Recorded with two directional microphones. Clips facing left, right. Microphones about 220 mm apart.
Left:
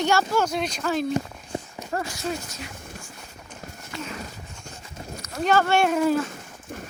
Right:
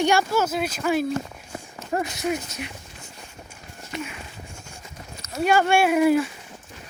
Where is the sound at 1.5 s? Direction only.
25° left (ahead or behind).